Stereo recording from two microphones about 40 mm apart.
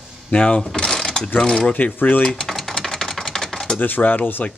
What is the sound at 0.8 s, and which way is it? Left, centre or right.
Mechanisms, centre.